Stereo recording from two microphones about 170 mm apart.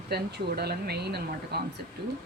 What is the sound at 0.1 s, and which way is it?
Speech, 70° right (ahead or behind).